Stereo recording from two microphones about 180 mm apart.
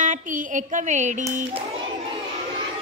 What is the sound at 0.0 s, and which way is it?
Speech, 45° right (ahead or behind).